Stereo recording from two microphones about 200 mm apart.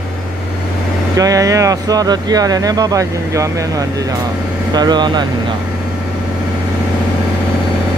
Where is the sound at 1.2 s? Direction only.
15° right (ahead or behind).